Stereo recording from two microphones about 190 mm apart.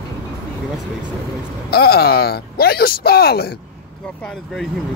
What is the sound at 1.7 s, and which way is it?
Speech, 55° left (ahead or behind).